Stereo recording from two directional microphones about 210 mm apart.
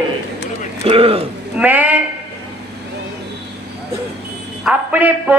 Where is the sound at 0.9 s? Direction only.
25° right (ahead or behind).